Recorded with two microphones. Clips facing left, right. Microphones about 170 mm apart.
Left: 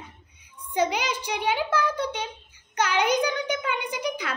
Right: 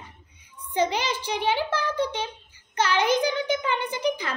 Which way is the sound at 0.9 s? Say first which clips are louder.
Right 1 dB; 10° left (ahead or behind).